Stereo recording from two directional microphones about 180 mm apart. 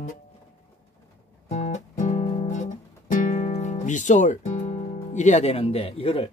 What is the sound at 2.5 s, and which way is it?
Guitar, 45° left (ahead or behind).